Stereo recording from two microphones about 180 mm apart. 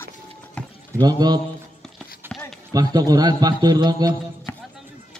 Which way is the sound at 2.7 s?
20° right (ahead or behind).